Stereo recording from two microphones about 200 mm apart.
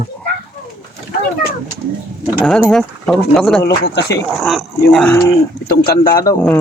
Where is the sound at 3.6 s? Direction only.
55° left (ahead or behind).